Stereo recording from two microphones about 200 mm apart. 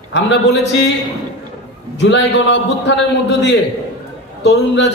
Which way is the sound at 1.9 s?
60° left (ahead or behind).